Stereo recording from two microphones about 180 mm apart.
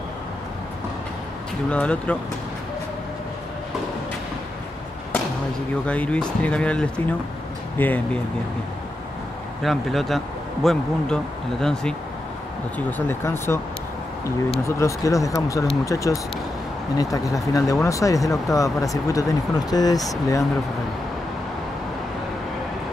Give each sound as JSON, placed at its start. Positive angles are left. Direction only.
{"t": 1.7, "sound": "speech", "side_deg": 5}
{"t": 5.9, "sound": "speech", "side_deg": 5}
{"t": 9.6, "sound": "speech", "side_deg": 0}
{"t": 14.8, "sound": "speech", "side_deg": 15}